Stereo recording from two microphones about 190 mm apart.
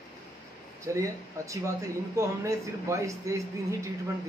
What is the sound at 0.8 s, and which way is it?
Speech, 15° right (ahead or behind).